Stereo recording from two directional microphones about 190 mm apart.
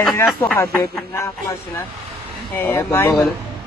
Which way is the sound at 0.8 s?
15° left (ahead or behind).